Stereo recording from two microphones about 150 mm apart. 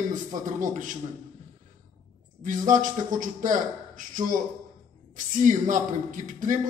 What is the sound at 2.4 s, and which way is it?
A man's voice, 60° right (ahead or behind).